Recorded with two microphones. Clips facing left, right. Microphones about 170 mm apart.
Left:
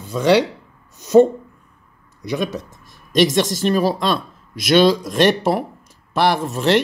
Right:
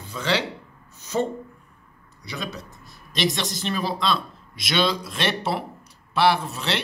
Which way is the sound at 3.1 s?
45° left (ahead or behind).